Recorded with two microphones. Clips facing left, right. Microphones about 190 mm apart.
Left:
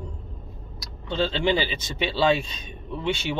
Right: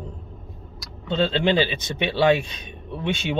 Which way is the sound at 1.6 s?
20° right (ahead or behind).